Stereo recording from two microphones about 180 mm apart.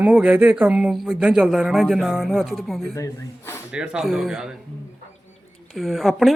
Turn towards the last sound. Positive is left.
turn(degrees=0)  # may be behind; listen again after turning